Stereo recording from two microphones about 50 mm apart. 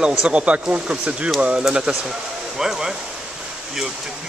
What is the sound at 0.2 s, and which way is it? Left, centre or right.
Speech, right.